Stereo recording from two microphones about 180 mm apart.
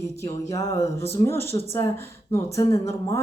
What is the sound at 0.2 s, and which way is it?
Speech, 20° left (ahead or behind).